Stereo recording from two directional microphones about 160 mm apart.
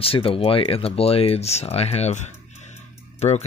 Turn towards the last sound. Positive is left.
turn(degrees=45)  # may be behind; listen again after turning